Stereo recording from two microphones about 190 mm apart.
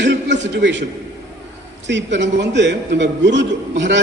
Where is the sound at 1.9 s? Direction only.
70° right (ahead or behind).